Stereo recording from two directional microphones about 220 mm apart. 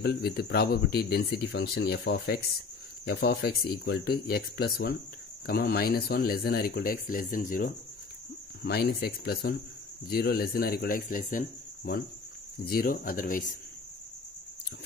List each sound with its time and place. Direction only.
0.0 s speech: 45° left (ahead or behind)